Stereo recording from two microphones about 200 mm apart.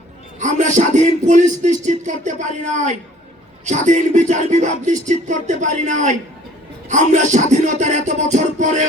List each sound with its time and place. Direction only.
0.3 s speech: 35° right (ahead or behind)